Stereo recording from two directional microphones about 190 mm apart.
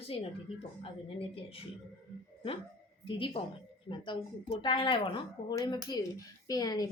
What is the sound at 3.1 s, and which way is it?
Speech, 25° left (ahead or behind).